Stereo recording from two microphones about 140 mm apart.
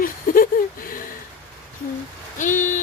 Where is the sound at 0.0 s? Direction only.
90° left.